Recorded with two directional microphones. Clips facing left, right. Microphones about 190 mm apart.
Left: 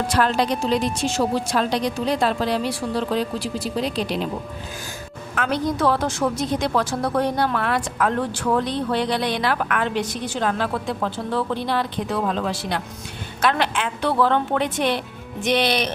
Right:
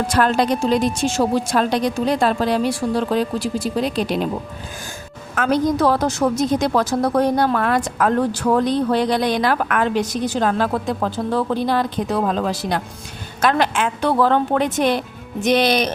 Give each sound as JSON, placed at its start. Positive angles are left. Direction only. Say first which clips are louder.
{"t": 0.1, "sound": "a woman's voice", "louder": "right 3 dB", "side_deg": -50}
{"t": 5.3, "sound": "a woman's voice", "louder": "right 5 dB", "side_deg": -40}